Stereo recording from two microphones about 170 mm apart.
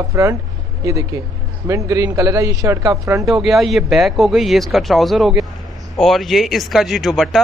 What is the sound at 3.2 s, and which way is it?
Speech, centre (ahead or behind).